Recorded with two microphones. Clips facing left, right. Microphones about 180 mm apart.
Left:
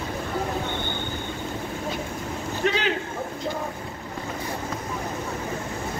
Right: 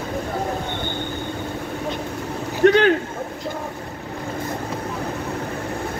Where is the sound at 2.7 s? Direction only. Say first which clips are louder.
Right 10 dB; 55° right (ahead or behind).